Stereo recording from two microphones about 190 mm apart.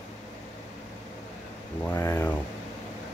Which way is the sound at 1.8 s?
15° left (ahead or behind).